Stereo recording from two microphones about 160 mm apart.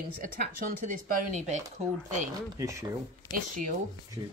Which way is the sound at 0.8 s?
55° right (ahead or behind).